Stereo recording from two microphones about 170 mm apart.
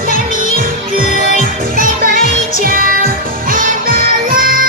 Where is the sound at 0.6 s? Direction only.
55° right (ahead or behind).